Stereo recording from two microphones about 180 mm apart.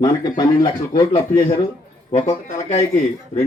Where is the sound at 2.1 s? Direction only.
40° left (ahead or behind).